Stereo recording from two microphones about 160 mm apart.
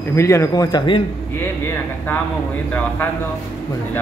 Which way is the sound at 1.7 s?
10° left (ahead or behind).